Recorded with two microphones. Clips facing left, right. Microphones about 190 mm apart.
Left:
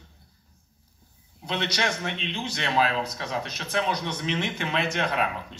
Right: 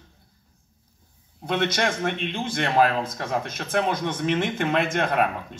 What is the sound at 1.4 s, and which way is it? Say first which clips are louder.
A man's voice: right 4 dB; 50° right (ahead or behind).